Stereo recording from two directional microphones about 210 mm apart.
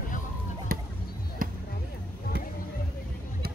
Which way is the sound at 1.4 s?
40° right (ahead or behind).